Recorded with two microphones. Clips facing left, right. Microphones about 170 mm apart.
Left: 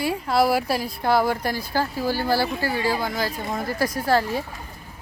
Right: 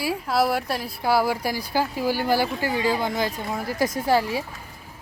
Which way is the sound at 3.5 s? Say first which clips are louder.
Even; 10° right (ahead or behind).